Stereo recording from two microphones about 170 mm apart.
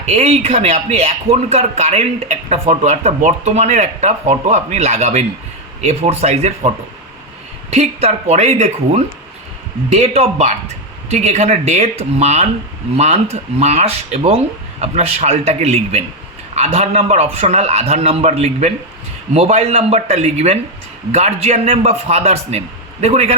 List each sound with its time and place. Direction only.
0.0 s speech: 40° right (ahead or behind)